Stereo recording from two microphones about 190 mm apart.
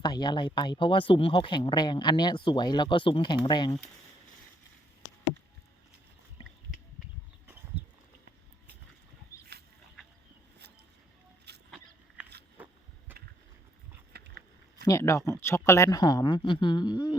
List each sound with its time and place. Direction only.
0.0 s speech: 25° left (ahead or behind)
11.5 s vehicle: 60° right (ahead or behind)
12.6 s vehicle: 10° right (ahead or behind)
14.1 s a sound: 60° right (ahead or behind)
14.8 s speech: 15° left (ahead or behind)